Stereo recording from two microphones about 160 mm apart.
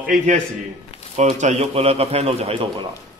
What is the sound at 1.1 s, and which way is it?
A man's voice, 45° right (ahead or behind).